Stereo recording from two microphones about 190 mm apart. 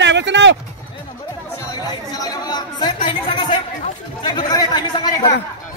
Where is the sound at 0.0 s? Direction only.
65° right (ahead or behind).